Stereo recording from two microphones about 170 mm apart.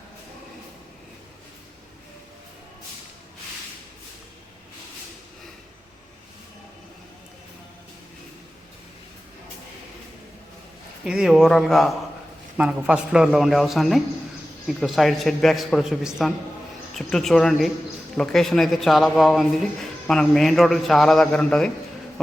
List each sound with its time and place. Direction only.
11.0 s a man's voice: 5° right (ahead or behind)